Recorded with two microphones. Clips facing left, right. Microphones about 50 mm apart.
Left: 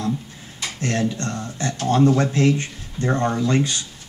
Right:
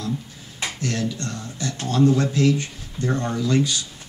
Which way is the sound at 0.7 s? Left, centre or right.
Left.